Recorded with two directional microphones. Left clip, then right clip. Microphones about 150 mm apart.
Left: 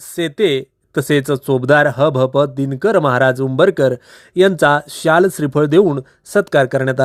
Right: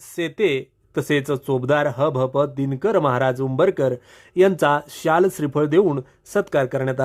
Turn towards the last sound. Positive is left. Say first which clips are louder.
# left 7 dB
turn(degrees=30)  # may be behind; listen again after turning